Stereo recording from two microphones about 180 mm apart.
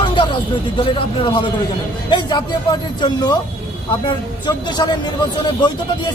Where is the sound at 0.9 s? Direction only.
30° left (ahead or behind).